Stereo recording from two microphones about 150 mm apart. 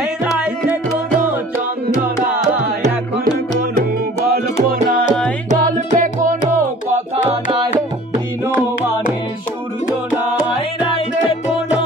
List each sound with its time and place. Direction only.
0.4 s music: 10° right (ahead or behind)
4.6 s music: 75° right (ahead or behind)
5.6 s music: 60° right (ahead or behind)